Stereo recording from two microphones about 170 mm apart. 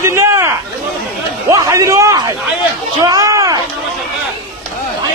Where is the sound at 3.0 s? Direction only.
20° right (ahead or behind).